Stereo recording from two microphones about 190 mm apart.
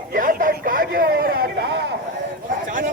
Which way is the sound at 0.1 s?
45° right (ahead or behind).